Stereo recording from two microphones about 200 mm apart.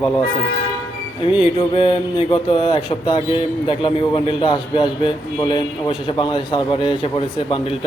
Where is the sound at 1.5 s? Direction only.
25° left (ahead or behind).